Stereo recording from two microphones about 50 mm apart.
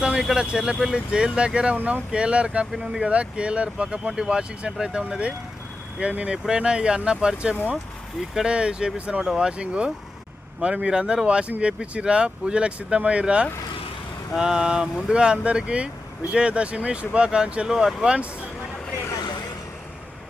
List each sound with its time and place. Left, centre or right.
0.2 s speech: centre
0.9 s speech: centre
1.7 s speech: right
2.1 s speech: right